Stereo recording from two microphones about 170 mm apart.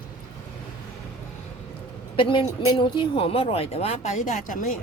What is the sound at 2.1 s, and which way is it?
Speech, 30° left (ahead or behind).